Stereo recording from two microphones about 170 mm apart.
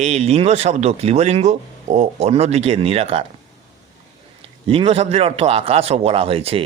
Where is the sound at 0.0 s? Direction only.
40° right (ahead or behind).